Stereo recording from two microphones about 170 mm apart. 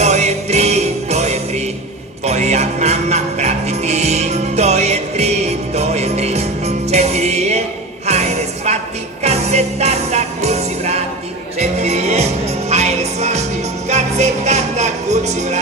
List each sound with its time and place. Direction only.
0.0 s music: 40° right (ahead or behind)